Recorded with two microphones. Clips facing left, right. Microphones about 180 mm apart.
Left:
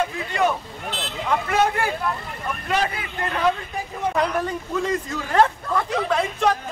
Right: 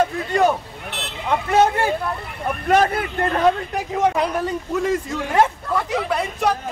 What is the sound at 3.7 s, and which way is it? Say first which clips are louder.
Speech: right 7 dB; 80° right.